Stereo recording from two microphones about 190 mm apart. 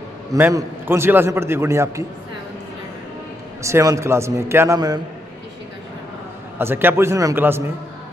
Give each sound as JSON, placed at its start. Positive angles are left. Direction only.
{"t": 0.3, "sound": "a man's voice", "side_deg": -15}
{"t": 3.6, "sound": "a man's voice", "side_deg": -15}
{"t": 6.6, "sound": "a man's voice", "side_deg": -10}